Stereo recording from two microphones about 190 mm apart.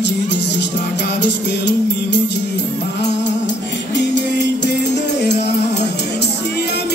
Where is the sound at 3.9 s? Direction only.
65° left (ahead or behind).